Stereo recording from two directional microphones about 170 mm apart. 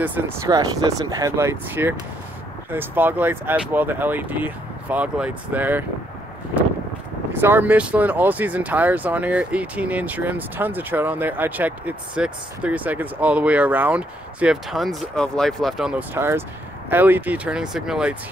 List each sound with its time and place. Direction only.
0.0 s speech: 10° right (ahead or behind)
0.5 s speech: 20° right (ahead or behind)
7.3 s speech: 10° right (ahead or behind)